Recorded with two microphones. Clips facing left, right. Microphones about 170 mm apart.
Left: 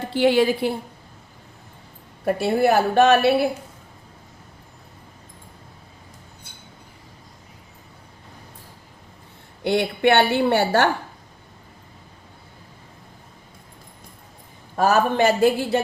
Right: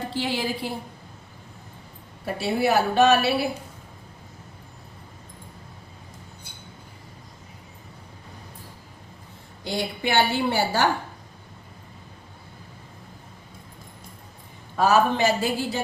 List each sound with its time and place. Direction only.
0.1 s a woman's voice: 60° left (ahead or behind)
2.2 s a woman's voice: 50° left (ahead or behind)
9.6 s a woman's voice: 65° left (ahead or behind)
14.8 s a woman's voice: 50° left (ahead or behind)